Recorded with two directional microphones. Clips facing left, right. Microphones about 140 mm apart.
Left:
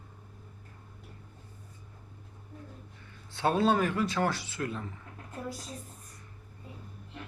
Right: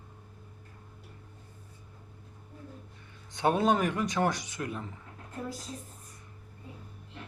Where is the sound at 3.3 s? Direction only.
20° right (ahead or behind).